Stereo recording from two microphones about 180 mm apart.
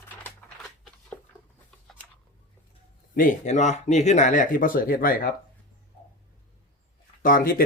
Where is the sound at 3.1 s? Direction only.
50° left (ahead or behind).